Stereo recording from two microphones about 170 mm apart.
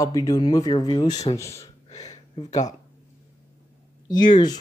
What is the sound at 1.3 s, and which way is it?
Speech, 15° left (ahead or behind).